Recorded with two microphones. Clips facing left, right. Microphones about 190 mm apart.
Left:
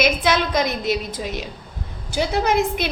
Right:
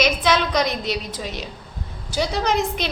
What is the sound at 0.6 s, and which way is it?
Speech, 50° left (ahead or behind).